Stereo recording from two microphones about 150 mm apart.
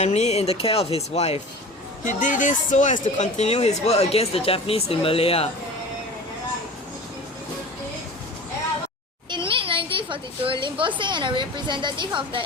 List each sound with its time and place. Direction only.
0.0 s speech: 45° left (ahead or behind)
2.0 s speech: 60° left (ahead or behind); by 5.5 s 40° left (ahead or behind)
9.3 s a sound: 35° right (ahead or behind)